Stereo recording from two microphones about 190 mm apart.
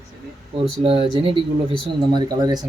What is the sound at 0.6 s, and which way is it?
Speech, 30° right (ahead or behind).